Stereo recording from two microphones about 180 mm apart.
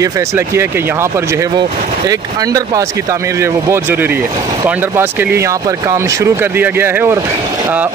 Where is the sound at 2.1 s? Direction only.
20° right (ahead or behind).